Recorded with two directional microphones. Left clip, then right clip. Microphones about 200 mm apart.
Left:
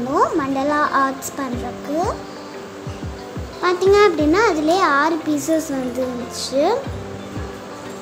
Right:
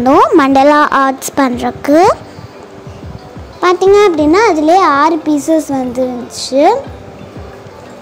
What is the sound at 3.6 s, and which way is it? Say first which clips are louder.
A child's voice: right 7 dB; 30° right (ahead or behind).